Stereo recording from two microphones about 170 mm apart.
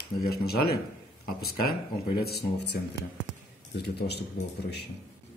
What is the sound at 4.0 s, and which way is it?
Speech, 75° left (ahead or behind).